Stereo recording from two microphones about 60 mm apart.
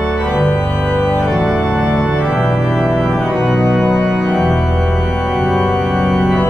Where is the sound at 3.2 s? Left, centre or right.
Centre.